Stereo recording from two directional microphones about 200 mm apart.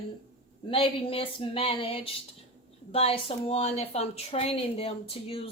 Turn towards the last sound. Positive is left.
turn(degrees=30)  # may be behind; listen again after turning